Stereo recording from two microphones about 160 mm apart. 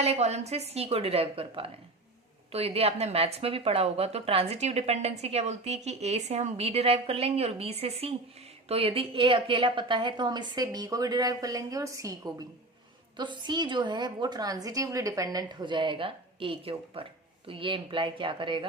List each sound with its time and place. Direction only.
0.0 s a woman's voice: 40° right (ahead or behind)